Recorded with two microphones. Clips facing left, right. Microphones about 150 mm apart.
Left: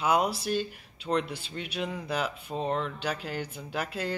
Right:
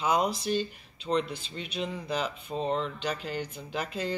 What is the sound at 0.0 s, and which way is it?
Speech, 10° left (ahead or behind).